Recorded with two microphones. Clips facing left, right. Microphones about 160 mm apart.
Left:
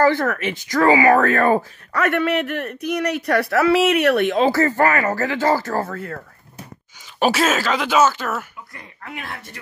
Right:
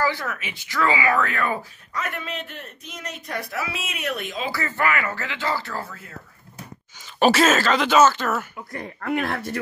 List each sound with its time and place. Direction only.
0.0 s speech: 55° left (ahead or behind)
2.0 s speech: 70° left (ahead or behind)
4.5 s speech: 40° left (ahead or behind); by 6.2 s 55° left (ahead or behind)
7.2 s speech: 5° left (ahead or behind)
8.7 s speech: 55° right (ahead or behind)